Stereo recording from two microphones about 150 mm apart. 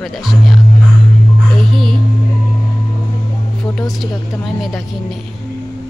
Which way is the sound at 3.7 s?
Centre (ahead or behind).